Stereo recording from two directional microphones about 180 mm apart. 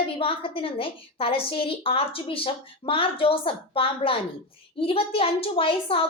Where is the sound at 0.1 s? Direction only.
30° left (ahead or behind).